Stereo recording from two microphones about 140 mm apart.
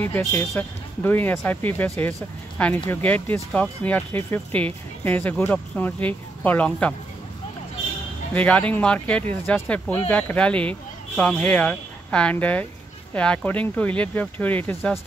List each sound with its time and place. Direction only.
0.0 s speech: 15° left (ahead or behind)
8.4 s speech: 10° left (ahead or behind)